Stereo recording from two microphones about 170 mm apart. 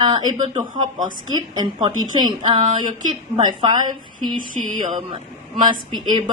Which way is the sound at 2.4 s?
30° right (ahead or behind).